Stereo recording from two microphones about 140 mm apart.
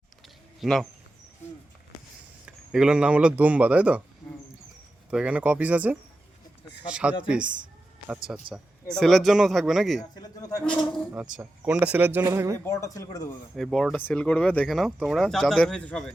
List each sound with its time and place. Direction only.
0.6 s speech: centre (ahead or behind)
2.7 s speech: 5° right (ahead or behind)
5.1 s speech: 10° right (ahead or behind)
11.3 s speech: 10° right (ahead or behind)
12.6 s speech: 20° left (ahead or behind)
13.6 s speech: centre (ahead or behind)